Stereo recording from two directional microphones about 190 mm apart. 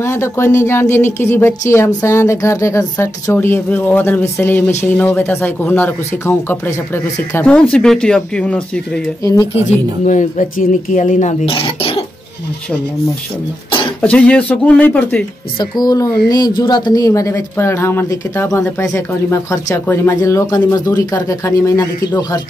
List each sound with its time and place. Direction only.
0.0 s speech: 15° left (ahead or behind)
9.2 s speech: 15° left (ahead or behind)
9.6 s speech: 40° left (ahead or behind)
14.0 s speech: 5° left (ahead or behind)
15.6 s speech: 20° left (ahead or behind)